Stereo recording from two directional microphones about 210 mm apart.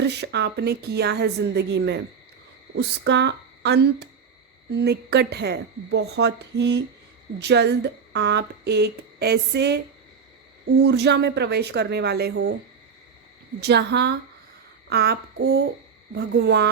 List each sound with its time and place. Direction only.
0.0 s speech: 55° right (ahead or behind)
13.6 s speech: 55° right (ahead or behind)